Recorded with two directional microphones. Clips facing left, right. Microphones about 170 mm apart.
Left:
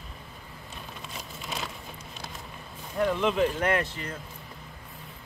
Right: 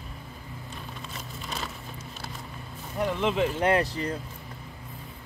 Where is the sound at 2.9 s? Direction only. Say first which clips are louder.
Left 1 dB; 20° right (ahead or behind).